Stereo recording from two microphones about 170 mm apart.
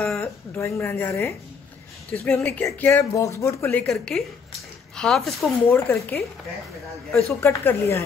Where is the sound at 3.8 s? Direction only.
Centre (ahead or behind).